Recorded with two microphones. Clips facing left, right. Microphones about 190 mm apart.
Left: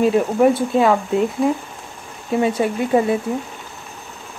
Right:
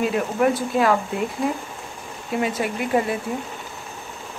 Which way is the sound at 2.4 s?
30° left (ahead or behind).